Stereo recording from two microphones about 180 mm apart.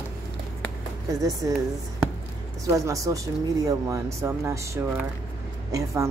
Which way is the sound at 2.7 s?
20° right (ahead or behind).